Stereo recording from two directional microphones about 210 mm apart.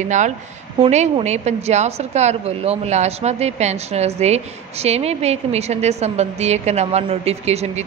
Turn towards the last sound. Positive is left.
turn(degrees=-30)  # may be behind; listen again after turning